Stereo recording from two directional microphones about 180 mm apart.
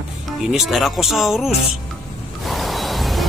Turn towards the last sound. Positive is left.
turn(degrees=0)  # may be behind; listen again after turning